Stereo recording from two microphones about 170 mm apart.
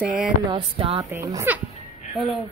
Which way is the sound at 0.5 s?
30° right (ahead or behind).